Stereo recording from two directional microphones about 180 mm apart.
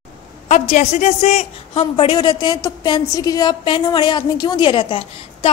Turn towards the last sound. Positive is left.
turn(degrees=30)  # may be behind; listen again after turning